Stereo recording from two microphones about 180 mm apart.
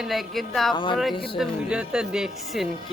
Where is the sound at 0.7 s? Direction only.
25° left (ahead or behind).